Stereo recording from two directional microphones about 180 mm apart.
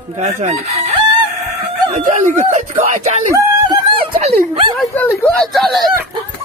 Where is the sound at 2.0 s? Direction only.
45° right (ahead or behind).